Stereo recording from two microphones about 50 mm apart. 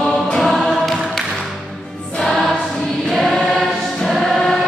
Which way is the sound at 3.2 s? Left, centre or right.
Centre.